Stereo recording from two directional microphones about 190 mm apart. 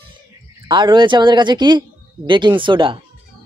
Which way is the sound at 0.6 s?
25° right (ahead or behind).